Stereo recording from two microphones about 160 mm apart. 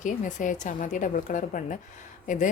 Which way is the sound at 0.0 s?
50° left (ahead or behind).